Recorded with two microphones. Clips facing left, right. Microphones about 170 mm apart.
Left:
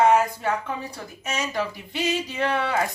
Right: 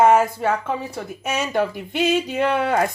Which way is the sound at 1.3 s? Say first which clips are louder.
Right 6 dB; 55° right (ahead or behind).